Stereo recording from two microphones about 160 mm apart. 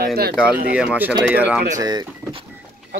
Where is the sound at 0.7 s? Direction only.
10° right (ahead or behind).